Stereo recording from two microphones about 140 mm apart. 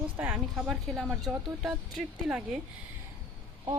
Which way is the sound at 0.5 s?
Centre (ahead or behind).